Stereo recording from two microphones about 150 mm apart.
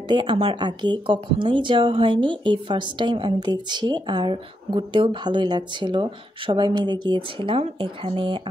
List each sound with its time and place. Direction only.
0.1 s speech: 35° right (ahead or behind)